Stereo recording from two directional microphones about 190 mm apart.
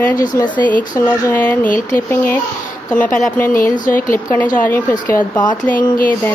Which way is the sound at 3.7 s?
45° left (ahead or behind).